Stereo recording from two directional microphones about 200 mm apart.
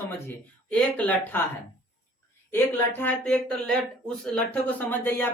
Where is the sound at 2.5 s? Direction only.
10° left (ahead or behind).